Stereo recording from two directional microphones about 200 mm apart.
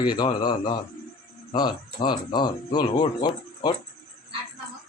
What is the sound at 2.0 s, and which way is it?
Speech, 20° left (ahead or behind).